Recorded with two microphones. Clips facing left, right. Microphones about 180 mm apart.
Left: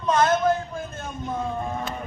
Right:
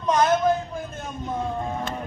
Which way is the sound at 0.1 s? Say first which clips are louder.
Even; 15° right (ahead or behind).